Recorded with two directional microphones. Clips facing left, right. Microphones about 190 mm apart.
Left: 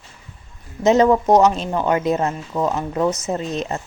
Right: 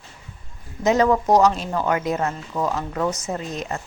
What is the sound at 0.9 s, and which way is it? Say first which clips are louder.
Speech: left 4 dB; 25° left (ahead or behind).